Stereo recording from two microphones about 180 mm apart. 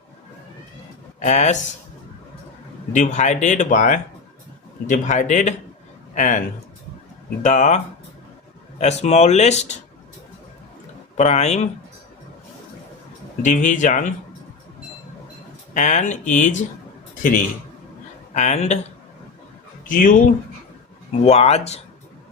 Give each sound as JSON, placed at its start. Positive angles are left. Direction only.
{"t": 1.2, "sound": "speech", "side_deg": 40}
{"t": 2.9, "sound": "speech", "side_deg": 45}
{"t": 7.4, "sound": "speech", "side_deg": 40}
{"t": 8.8, "sound": "speech", "side_deg": 35}
{"t": 11.2, "sound": "speech", "side_deg": 40}
{"t": 13.4, "sound": "speech", "side_deg": 45}
{"t": 15.7, "sound": "speech", "side_deg": 40}
{"t": 18.3, "sound": "speech", "side_deg": 40}
{"t": 19.9, "sound": "speech", "side_deg": 50}
{"t": 21.2, "sound": "speech", "side_deg": 35}